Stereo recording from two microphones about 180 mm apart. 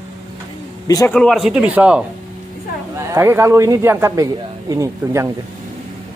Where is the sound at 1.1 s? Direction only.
5° left (ahead or behind); by 5.3 s 15° right (ahead or behind).